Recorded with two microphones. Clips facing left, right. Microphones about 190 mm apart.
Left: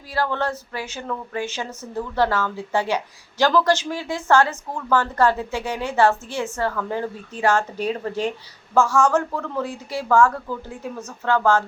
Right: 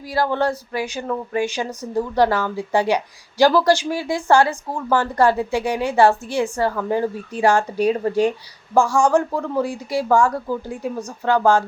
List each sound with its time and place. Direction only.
0.1 s speech: 15° right (ahead or behind)